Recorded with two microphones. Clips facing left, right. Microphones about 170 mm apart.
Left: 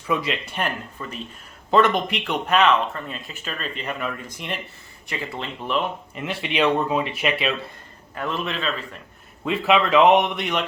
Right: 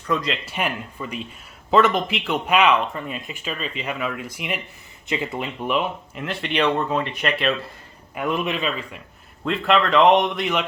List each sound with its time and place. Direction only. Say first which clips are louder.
0.1 s speech: even; 5° left (ahead or behind)
0.4 s speech: right 1 dB; 5° right (ahead or behind)
5.0 s speech: right 5 dB; 20° right (ahead or behind)
5.6 s speech: right 1 dB; 5° right (ahead or behind)
8.1 s speech: right 3 dB; 15° right (ahead or behind)
9.4 s speech: even; 5° left (ahead or behind)